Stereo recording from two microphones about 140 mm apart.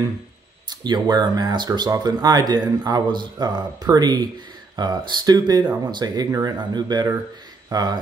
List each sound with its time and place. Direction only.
0.7 s speech: 30° right (ahead or behind)